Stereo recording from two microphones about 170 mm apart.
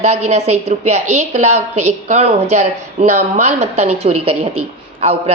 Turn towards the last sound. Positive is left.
turn(degrees=-35)  # may be behind; listen again after turning